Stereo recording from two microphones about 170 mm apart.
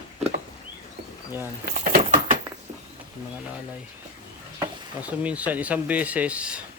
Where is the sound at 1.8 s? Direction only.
50° right (ahead or behind).